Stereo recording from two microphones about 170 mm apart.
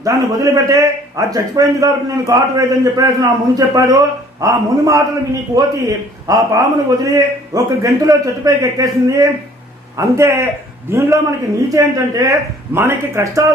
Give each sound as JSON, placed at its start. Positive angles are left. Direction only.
{"t": 0.0, "sound": "a man's voice", "side_deg": -20}